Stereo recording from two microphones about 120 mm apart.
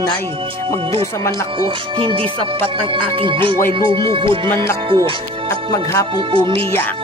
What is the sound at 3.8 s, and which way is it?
Speech, 40° right (ahead or behind).